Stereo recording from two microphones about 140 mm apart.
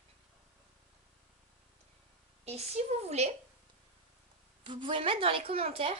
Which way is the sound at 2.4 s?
50° right (ahead or behind).